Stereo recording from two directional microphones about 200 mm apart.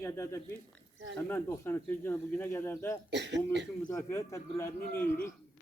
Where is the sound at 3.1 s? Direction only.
60° right (ahead or behind).